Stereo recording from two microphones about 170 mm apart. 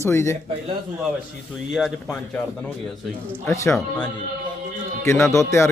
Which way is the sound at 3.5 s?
15° left (ahead or behind).